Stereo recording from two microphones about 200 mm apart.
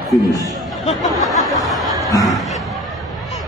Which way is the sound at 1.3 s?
15° left (ahead or behind).